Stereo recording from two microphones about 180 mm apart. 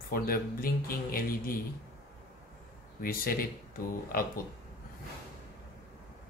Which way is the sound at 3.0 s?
55° left (ahead or behind).